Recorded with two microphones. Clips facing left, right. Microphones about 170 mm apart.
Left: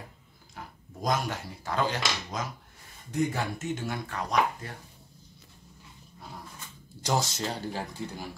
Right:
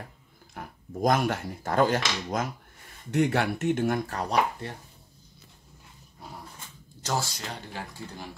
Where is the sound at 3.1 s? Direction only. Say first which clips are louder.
Right 5 dB; 75° right (ahead or behind); by 4.8 s 30° right (ahead or behind).